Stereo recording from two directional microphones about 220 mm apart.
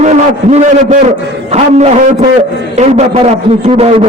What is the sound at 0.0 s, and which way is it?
A man's voice, 30° right (ahead or behind).